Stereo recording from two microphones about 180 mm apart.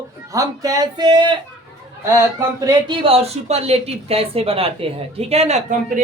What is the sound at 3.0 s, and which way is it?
Speech, 35° right (ahead or behind).